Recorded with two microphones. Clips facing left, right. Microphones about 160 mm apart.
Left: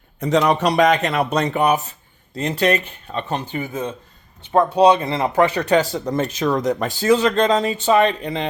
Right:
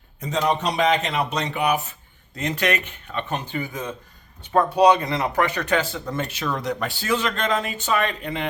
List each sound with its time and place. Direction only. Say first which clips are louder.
0.2 s speech: left 6 dB; 70° left (ahead or behind); by 1.8 s 45° left (ahead or behind)
2.3 s speech: left 5 dB; 30° left (ahead or behind)